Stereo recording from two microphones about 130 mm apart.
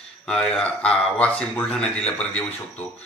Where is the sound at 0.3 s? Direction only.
5° left (ahead or behind).